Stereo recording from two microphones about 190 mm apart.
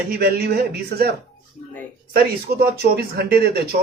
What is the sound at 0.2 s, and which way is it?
Speech, 55° right (ahead or behind).